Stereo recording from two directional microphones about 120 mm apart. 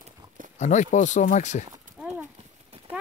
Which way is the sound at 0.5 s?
80° left.